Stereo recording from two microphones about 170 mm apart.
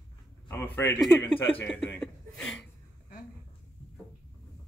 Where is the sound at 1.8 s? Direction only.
5° left (ahead or behind).